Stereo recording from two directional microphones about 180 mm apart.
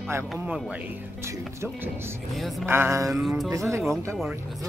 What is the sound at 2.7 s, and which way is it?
Speech, 15° right (ahead or behind).